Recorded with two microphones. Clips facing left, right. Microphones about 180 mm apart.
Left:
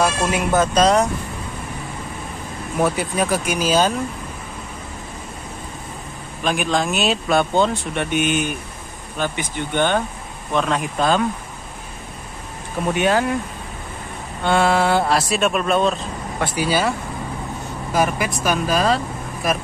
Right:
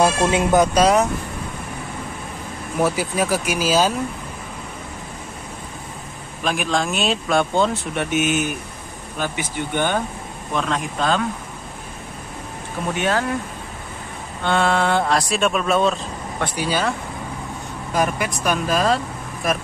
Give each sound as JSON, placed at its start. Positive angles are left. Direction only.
{"t": 0.0, "sound": "speech", "side_deg": -20}
{"t": 2.8, "sound": "speech", "side_deg": -5}
{"t": 6.4, "sound": "speech", "side_deg": 0}
{"t": 10.5, "sound": "speech", "side_deg": 5}
{"t": 12.9, "sound": "speech", "side_deg": 15}
{"t": 14.4, "sound": "speech", "side_deg": 10}
{"t": 17.9, "sound": "speech", "side_deg": 5}